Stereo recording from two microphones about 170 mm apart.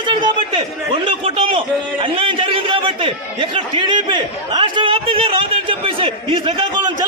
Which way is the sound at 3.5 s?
30° right (ahead or behind).